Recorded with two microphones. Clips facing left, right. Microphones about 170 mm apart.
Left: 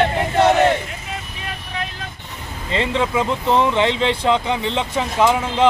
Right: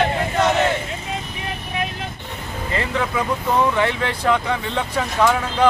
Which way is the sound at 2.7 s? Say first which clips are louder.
Left 3 dB; 20° left (ahead or behind).